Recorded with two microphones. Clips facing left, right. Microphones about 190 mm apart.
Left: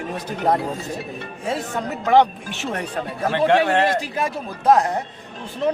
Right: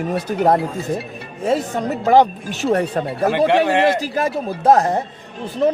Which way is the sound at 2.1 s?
40° right (ahead or behind).